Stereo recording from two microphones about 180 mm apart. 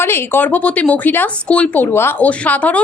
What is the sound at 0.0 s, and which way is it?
Speech, 15° left (ahead or behind).